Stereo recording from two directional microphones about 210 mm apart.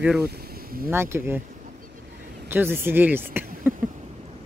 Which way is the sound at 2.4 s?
10° right (ahead or behind).